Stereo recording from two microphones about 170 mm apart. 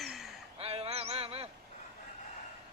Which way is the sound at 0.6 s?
35° right (ahead or behind).